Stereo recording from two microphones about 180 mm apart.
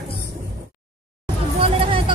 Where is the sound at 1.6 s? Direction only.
30° right (ahead or behind).